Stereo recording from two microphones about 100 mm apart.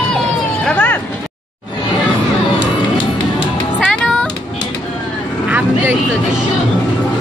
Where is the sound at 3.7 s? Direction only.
5° left (ahead or behind).